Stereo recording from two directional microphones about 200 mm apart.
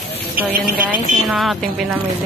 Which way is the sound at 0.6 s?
45° right (ahead or behind).